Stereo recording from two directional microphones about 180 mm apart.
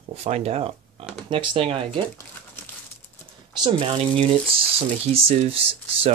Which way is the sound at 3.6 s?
30° right (ahead or behind).